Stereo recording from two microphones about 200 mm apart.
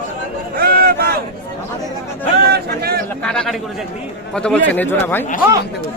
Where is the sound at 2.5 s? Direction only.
50° right (ahead or behind).